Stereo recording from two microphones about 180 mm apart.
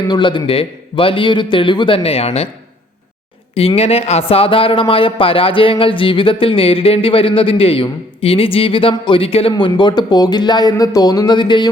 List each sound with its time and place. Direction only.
0.1 s speech: 25° left (ahead or behind)
3.5 s speech: 30° left (ahead or behind)